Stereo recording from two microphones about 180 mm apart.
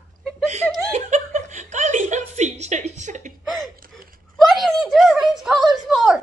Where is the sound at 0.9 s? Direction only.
40° right (ahead or behind).